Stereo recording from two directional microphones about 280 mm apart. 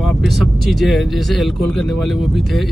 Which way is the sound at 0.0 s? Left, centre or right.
Centre.